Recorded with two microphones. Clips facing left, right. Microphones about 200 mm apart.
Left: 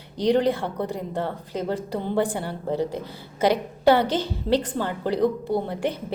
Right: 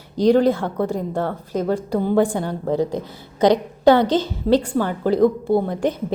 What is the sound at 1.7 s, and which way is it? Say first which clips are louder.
Speech: right 7 dB; 10° right (ahead or behind).